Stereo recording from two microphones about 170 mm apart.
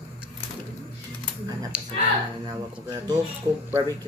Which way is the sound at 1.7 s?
5° right (ahead or behind).